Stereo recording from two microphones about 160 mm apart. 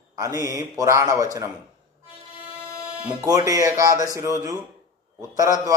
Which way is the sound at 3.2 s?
20° right (ahead or behind).